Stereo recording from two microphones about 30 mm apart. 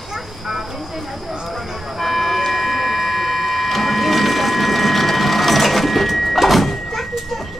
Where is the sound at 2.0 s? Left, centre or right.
Centre.